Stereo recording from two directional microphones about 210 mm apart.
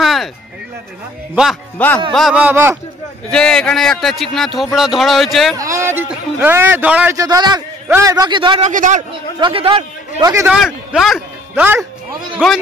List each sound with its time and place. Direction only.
0.0 s a sound: centre (ahead or behind)
1.3 s a man's voice: centre (ahead or behind)
3.3 s a man's voice: 5° left (ahead or behind)
5.6 s a man's voice: 15° right (ahead or behind); by 9.0 s 35° right (ahead or behind)
9.4 s a man's voice: 25° right (ahead or behind)
10.3 s a man's voice: 10° right (ahead or behind)
10.6 s a man's voice: centre (ahead or behind)